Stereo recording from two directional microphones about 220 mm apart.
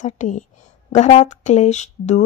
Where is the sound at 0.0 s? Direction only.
35° left (ahead or behind).